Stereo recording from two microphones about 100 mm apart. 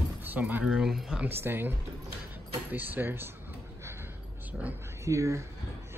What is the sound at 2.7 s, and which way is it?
Speech, 20° right (ahead or behind).